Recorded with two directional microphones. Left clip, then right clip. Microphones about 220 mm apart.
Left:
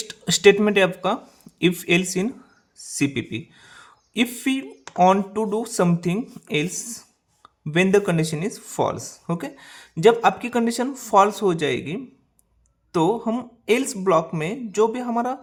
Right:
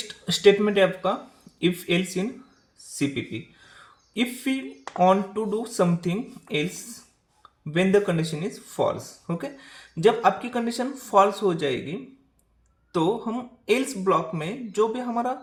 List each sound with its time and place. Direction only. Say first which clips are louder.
0.1 s speech: left 3 dB; 40° left (ahead or behind)